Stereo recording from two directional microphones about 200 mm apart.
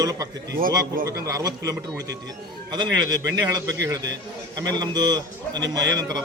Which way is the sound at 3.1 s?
20° right (ahead or behind).